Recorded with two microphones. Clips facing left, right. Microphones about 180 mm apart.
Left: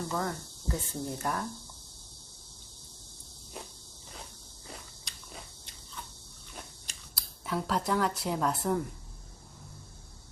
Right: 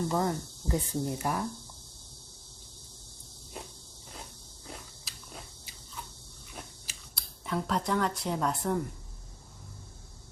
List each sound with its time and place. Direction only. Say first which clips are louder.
0.1 s speech: right 4 dB; 20° right (ahead or behind)
4.7 s biting: right 1 dB; centre (ahead or behind)
6.5 s scissors: right 1 dB; centre (ahead or behind)